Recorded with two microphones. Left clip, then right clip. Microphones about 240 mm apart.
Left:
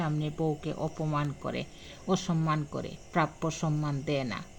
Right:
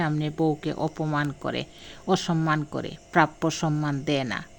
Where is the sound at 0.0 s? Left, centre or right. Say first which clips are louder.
Right 7 dB; right.